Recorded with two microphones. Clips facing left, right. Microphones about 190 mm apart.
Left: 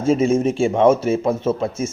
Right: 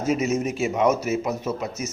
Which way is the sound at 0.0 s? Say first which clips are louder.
Left 6 dB; 30° left (ahead or behind).